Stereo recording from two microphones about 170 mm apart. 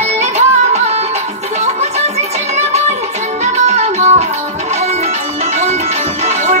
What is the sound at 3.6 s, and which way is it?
Music, 40° right (ahead or behind).